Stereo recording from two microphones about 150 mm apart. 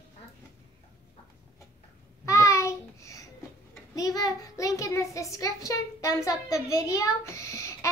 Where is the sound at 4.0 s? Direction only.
25° left (ahead or behind).